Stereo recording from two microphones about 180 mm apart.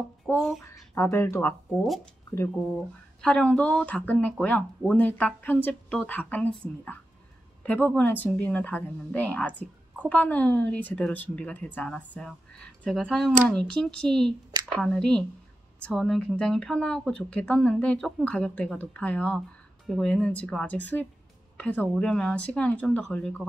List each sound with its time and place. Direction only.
0.3 s speech: 5° left (ahead or behind)
0.6 s speech: 15° left (ahead or behind)
3.2 s speech: 5° left (ahead or behind)